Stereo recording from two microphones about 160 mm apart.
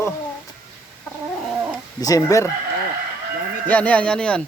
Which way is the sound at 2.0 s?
20° left (ahead or behind).